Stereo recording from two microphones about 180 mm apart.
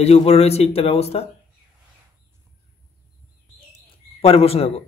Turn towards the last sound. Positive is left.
turn(degrees=35)  # may be behind; listen again after turning